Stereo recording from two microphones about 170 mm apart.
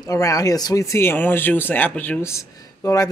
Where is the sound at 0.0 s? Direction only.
20° left (ahead or behind).